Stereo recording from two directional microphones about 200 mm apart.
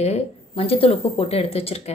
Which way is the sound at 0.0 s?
30° left (ahead or behind).